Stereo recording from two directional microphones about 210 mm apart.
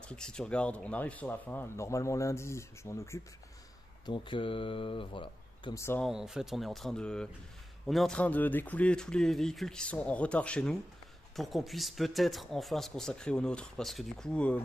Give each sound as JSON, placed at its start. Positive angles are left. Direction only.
{"t": 0.1, "sound": "speech", "side_deg": 5}
{"t": 6.0, "sound": "speech", "side_deg": 0}